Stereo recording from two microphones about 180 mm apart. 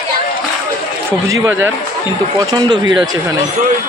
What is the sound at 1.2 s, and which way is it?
Speech, 15° right (ahead or behind).